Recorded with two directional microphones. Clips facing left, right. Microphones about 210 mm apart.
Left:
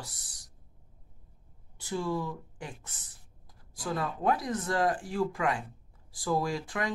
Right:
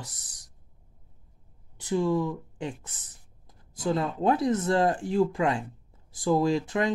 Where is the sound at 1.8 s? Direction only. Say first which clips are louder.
Right 7 dB; 20° right (ahead or behind).